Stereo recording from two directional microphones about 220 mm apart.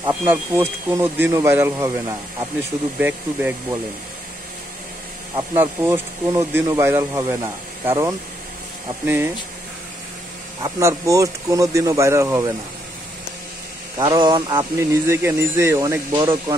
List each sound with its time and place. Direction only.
0.1 s speech: 10° right (ahead or behind)
5.6 s speech: 10° right (ahead or behind)
10.6 s speech: 15° right (ahead or behind)
13.9 s speech: 20° right (ahead or behind)